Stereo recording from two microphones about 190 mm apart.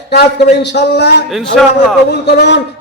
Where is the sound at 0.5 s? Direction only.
60° left (ahead or behind).